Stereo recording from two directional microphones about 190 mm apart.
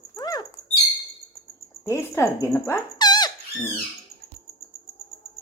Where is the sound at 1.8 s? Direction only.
15° left (ahead or behind).